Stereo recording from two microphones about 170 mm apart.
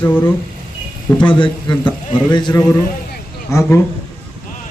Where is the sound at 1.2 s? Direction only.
30° left (ahead or behind).